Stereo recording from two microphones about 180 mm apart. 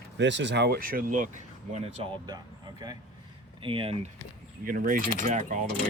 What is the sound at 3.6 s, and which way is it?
Speech, 30° right (ahead or behind).